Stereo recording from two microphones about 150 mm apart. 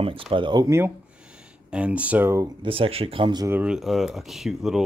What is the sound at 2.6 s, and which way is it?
Speech, 35° right (ahead or behind).